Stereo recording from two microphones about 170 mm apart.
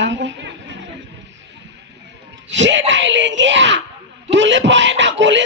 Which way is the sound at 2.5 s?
90° right.